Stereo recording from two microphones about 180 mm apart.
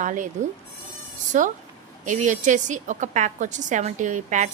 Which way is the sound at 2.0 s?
45° right (ahead or behind).